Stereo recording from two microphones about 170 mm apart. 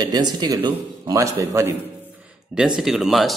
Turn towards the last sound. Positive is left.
turn(degrees=0)  # may be behind; listen again after turning